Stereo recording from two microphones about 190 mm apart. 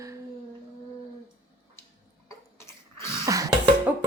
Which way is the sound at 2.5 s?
15° left (ahead or behind).